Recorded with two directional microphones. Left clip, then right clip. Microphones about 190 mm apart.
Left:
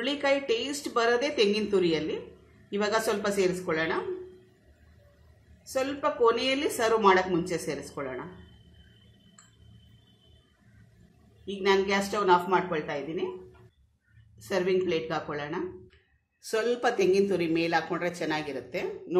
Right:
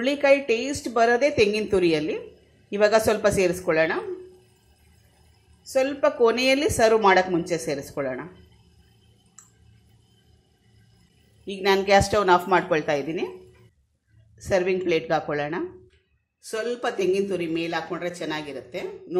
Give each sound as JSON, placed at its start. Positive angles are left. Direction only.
{"t": 0.0, "sound": "a woman's voice", "side_deg": -30}
{"t": 5.7, "sound": "a woman's voice", "side_deg": -40}
{"t": 11.4, "sound": "a woman's voice", "side_deg": -40}
{"t": 14.5, "sound": "a woman's voice", "side_deg": -35}
{"t": 16.4, "sound": "a woman's voice", "side_deg": -5}